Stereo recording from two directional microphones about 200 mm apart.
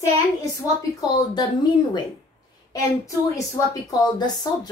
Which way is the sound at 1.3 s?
20° left (ahead or behind).